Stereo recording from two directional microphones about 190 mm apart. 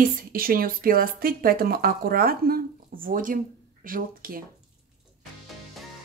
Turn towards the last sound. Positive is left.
turn(degrees=-50)  # may be behind; listen again after turning